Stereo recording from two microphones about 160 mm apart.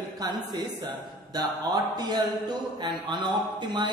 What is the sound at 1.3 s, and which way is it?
Speech, 25° right (ahead or behind).